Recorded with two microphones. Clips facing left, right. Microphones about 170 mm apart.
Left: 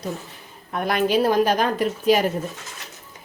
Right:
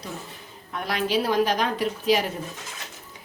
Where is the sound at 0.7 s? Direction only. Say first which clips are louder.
Left 5 dB; 50° left (ahead or behind).